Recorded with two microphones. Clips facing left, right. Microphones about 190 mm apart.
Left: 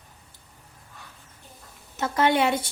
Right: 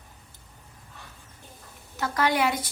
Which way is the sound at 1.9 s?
25° left (ahead or behind).